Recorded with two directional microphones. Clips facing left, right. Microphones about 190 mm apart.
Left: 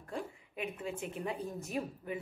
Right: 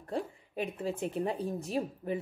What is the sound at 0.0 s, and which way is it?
Speech, 35° right (ahead or behind).